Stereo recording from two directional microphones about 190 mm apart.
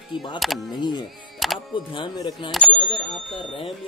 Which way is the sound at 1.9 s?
20° left (ahead or behind).